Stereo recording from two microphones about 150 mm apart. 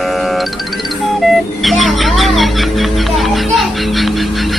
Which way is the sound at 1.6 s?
Centre (ahead or behind).